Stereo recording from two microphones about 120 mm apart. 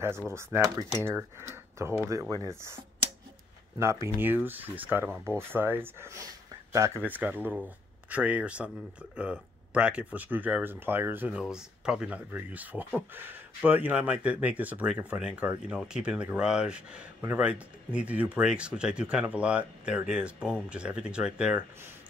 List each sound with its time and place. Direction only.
0.3 s speech: 20° right (ahead or behind)